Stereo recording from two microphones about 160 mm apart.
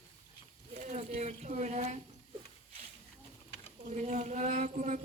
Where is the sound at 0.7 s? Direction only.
45° right (ahead or behind).